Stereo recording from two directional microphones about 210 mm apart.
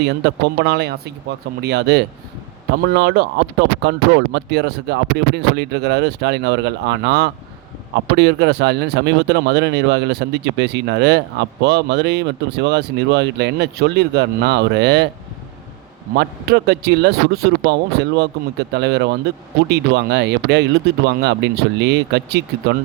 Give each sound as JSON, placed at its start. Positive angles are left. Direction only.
{"t": 0.2, "sound": "speech", "side_deg": -50}
{"t": 16.1, "sound": "speech", "side_deg": -50}